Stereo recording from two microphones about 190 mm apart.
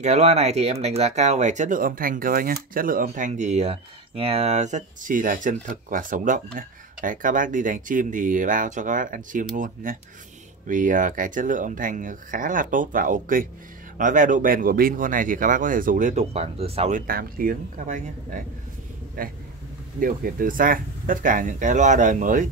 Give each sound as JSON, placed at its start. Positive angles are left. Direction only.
{"t": 0.0, "sound": "speech", "side_deg": -35}
{"t": 17.0, "sound": "speech", "side_deg": -50}